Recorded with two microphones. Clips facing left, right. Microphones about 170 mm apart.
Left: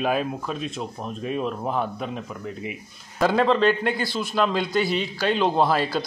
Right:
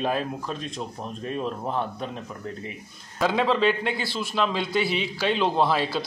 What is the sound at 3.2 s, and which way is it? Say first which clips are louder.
Speech: left 3 dB; centre (ahead or behind).